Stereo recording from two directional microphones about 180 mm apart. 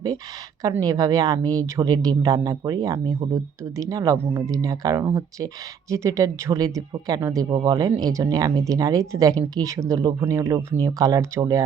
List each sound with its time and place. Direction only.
0.6 s speech: 20° right (ahead or behind)